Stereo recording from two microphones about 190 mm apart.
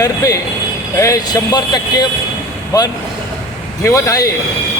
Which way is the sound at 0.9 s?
15° left (ahead or behind).